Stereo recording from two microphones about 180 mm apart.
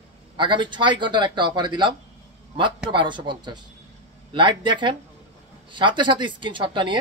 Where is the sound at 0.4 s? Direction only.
25° right (ahead or behind).